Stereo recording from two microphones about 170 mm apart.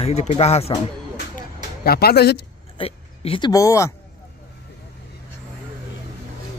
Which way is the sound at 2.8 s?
35° left (ahead or behind).